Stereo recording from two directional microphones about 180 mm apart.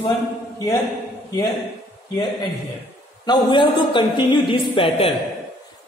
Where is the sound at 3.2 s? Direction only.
25° left (ahead or behind).